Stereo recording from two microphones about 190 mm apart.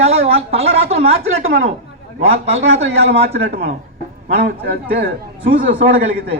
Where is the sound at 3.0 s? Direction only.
65° right (ahead or behind).